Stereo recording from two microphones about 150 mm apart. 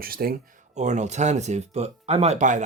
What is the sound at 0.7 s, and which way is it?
Speech, 50° right (ahead or behind).